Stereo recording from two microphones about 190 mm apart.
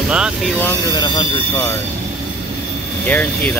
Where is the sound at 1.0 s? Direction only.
20° left (ahead or behind).